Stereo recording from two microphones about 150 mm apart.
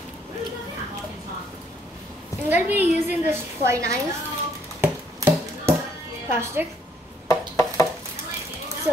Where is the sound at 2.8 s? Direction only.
15° right (ahead or behind).